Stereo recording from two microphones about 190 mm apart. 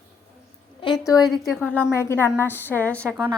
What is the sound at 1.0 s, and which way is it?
Speech, 20° left (ahead or behind).